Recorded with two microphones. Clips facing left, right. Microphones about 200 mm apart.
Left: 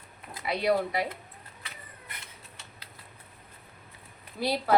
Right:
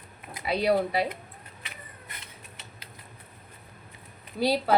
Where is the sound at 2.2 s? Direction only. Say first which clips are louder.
Right 2 dB; 20° right (ahead or behind).